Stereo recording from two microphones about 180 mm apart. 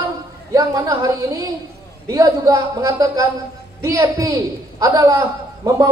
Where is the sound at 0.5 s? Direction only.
20° right (ahead or behind).